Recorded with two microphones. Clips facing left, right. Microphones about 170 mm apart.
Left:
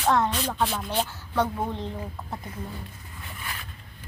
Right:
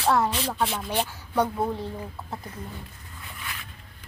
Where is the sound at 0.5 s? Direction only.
5° right (ahead or behind).